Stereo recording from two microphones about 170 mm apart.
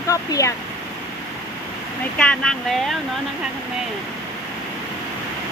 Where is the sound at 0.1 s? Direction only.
20° left (ahead or behind).